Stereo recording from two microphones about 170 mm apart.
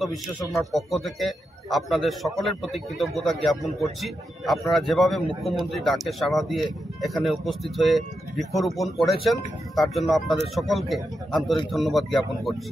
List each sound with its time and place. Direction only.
0.6 s speech: centre (ahead or behind)